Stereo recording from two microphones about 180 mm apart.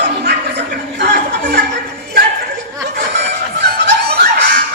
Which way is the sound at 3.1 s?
70° right (ahead or behind).